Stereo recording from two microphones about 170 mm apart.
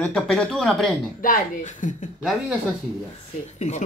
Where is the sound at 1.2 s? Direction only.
50° left (ahead or behind).